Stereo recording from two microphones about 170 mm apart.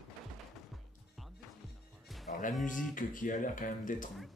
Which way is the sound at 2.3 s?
50° left (ahead or behind).